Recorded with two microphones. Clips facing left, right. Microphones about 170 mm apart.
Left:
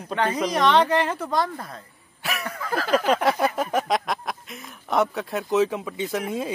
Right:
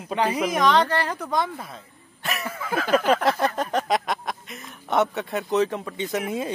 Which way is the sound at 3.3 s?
5° left (ahead or behind).